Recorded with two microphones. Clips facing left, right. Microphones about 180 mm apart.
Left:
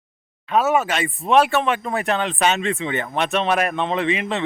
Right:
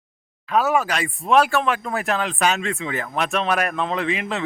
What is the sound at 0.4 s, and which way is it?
Speech, centre (ahead or behind).